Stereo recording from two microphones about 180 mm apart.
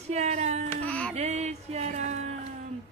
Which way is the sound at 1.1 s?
40° right (ahead or behind).